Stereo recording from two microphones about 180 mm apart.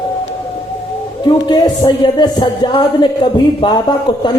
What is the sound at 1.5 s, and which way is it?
Speech, 25° left (ahead or behind).